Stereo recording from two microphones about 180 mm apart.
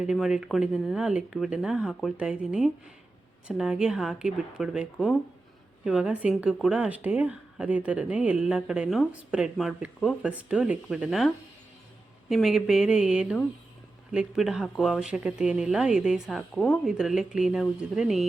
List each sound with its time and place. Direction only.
0.0 s speech: 5° right (ahead or behind)
12.3 s speech: centre (ahead or behind)